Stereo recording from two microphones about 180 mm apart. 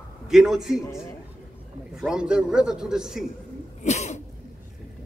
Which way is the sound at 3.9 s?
40° left (ahead or behind).